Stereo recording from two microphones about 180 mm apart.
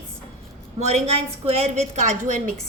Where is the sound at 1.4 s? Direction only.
40° right (ahead or behind).